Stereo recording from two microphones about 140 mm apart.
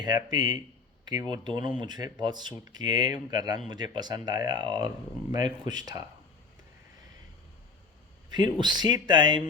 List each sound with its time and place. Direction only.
0.0 s speech: 30° right (ahead or behind)
8.3 s speech: 30° right (ahead or behind)